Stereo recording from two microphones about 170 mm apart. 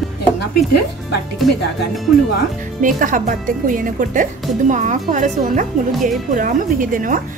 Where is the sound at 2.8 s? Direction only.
50° right (ahead or behind).